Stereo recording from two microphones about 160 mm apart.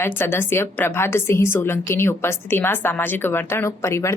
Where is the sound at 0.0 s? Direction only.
15° left (ahead or behind).